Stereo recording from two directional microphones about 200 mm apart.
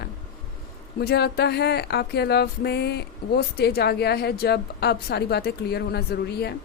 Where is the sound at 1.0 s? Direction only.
55° left (ahead or behind).